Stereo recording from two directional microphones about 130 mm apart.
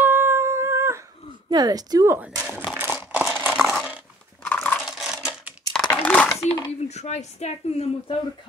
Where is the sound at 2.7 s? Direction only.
15° right (ahead or behind).